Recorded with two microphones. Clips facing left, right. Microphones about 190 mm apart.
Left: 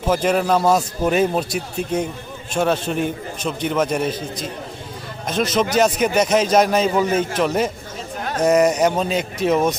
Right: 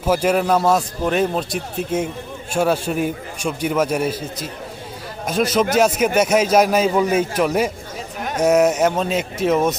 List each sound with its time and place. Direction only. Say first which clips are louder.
0.0 s a man's voice: right 1 dB; 10° right (ahead or behind)